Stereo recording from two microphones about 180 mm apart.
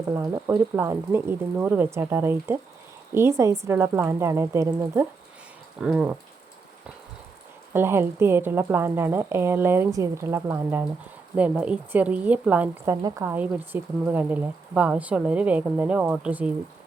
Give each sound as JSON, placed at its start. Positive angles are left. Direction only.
{"t": 0.1, "sound": "speech", "side_deg": -15}
{"t": 5.8, "sound": "rain on surface", "side_deg": -5}
{"t": 7.7, "sound": "speech", "side_deg": -15}
{"t": 12.8, "sound": "speech", "side_deg": -20}